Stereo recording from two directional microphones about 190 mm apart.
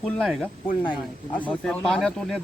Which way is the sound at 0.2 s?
Centre (ahead or behind).